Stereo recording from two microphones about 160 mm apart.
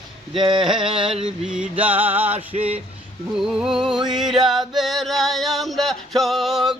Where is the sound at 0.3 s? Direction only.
30° right (ahead or behind).